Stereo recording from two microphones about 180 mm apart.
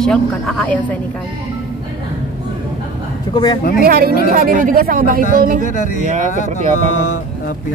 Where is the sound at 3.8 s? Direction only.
55° right (ahead or behind).